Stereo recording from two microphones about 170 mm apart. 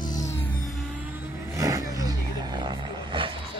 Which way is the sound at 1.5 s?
20° right (ahead or behind).